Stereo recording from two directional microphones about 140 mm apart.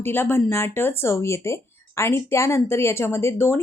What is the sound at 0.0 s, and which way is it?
A woman's voice, 15° left (ahead or behind).